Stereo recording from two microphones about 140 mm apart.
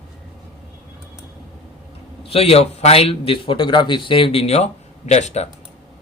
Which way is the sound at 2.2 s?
45° left (ahead or behind).